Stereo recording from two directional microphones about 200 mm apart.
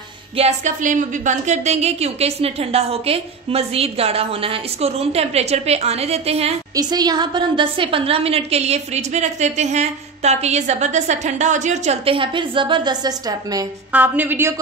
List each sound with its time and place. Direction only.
0.4 s a woman's voice: 35° right (ahead or behind)
6.7 s a woman's voice: 20° right (ahead or behind)
13.9 s a woman's voice: 10° right (ahead or behind)